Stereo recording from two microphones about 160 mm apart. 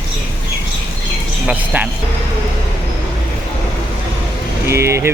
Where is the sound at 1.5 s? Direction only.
10° right (ahead or behind).